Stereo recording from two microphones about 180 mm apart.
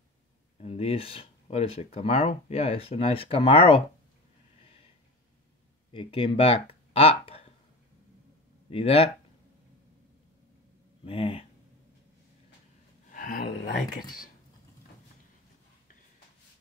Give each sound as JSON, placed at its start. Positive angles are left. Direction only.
{"t": 0.6, "sound": "speech", "side_deg": 35}
{"t": 5.9, "sound": "speech", "side_deg": 30}
{"t": 8.6, "sound": "speech", "side_deg": 30}
{"t": 11.1, "sound": "speech", "side_deg": 30}
{"t": 13.1, "sound": "a sound", "side_deg": 55}